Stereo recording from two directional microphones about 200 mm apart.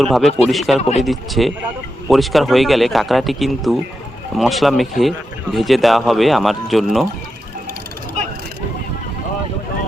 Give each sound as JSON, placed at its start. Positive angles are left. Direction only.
{"t": 0.0, "sound": "a man's voice", "side_deg": 0}
{"t": 0.8, "sound": "speech", "side_deg": 35}
{"t": 1.0, "sound": "a man's voice", "side_deg": 0}